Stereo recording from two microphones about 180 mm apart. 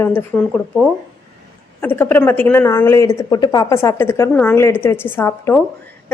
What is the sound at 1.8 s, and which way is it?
A woman's voice, 10° left (ahead or behind).